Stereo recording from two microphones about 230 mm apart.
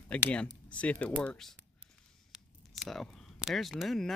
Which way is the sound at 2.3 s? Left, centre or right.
Centre.